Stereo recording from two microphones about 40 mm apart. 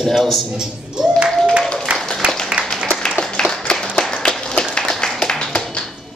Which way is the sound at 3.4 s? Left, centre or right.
Left.